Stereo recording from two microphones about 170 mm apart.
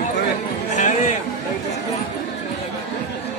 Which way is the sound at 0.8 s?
45° left (ahead or behind).